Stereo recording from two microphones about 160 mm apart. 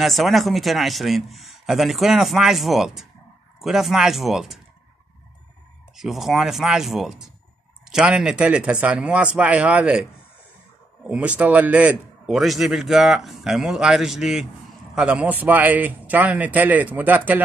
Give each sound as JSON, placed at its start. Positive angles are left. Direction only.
{"t": 0.0, "sound": "a man's voice", "side_deg": 0}
{"t": 5.9, "sound": "a man's voice", "side_deg": 0}
{"t": 11.1, "sound": "a man's voice", "side_deg": -10}